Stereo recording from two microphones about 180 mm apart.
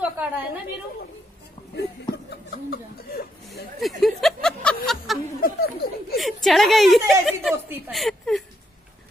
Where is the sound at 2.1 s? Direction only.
60° left (ahead or behind).